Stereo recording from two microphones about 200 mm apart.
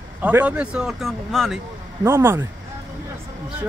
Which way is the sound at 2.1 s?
10° right (ahead or behind).